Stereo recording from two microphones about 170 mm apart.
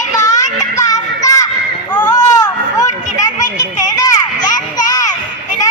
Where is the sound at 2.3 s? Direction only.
20° left (ahead or behind).